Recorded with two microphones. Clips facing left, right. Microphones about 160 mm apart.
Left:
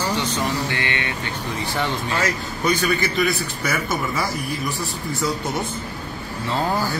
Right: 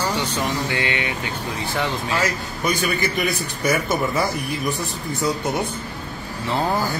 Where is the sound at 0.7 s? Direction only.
20° right (ahead or behind).